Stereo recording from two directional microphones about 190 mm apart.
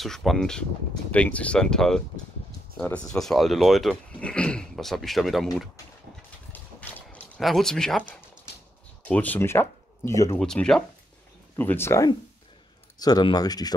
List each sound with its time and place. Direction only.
0.0 s speech: centre (ahead or behind)
6.5 s a sound: 10° left (ahead or behind)
9.0 s speech: 10° left (ahead or behind)
10.4 s speech: 5° left (ahead or behind); by 13.7 s 20° left (ahead or behind)